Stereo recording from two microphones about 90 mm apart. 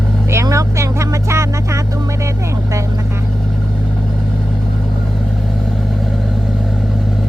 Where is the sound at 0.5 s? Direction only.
35° right (ahead or behind).